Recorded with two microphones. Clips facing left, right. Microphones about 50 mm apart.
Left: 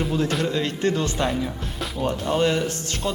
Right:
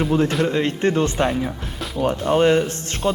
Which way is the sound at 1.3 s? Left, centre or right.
Centre.